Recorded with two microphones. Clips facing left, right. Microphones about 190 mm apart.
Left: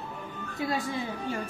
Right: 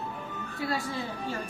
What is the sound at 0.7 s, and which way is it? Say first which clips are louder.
Speech: left 1 dB; 15° left (ahead or behind).